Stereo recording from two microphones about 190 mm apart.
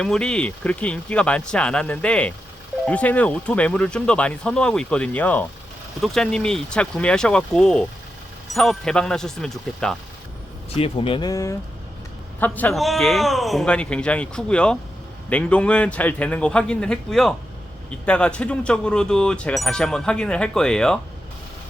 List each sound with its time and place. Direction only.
0.0 s speech: 5° left (ahead or behind)
10.8 s speech: 30° left (ahead or behind); by 21.0 s 5° left (ahead or behind)